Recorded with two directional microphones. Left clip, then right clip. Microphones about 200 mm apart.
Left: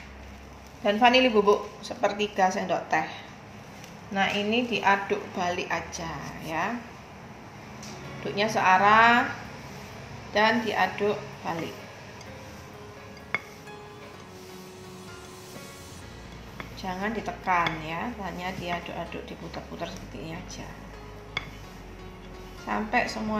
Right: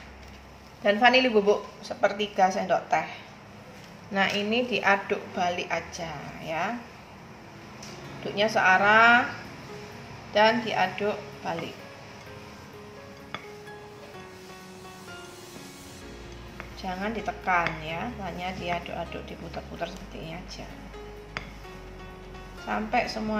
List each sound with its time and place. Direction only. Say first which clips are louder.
0.8 s a woman's voice: even; 10° right (ahead or behind)
4.1 s a woman's voice: even; 25° right (ahead or behind)
5.0 s a woman's voice: right 1 dB; 5° right (ahead or behind)
8.4 s a woman's voice: even; centre (ahead or behind)
10.3 s a woman's voice: right 1 dB; centre (ahead or behind)
16.8 s a woman's voice: even; centre (ahead or behind)
22.7 s a woman's voice: even; 5° right (ahead or behind)